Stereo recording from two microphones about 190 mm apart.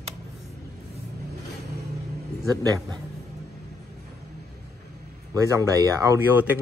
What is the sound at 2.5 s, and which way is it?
Speech, 20° right (ahead or behind).